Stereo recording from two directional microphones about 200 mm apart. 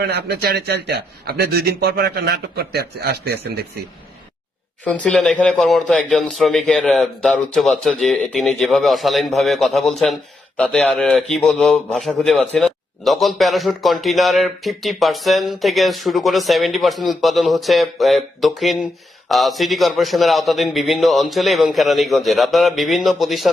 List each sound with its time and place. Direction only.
0.0 s a man's voice: 55° right (ahead or behind)
4.9 s a man's voice: 5° left (ahead or behind)